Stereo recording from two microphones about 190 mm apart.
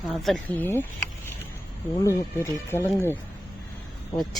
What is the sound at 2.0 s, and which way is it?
Speech, 15° left (ahead or behind).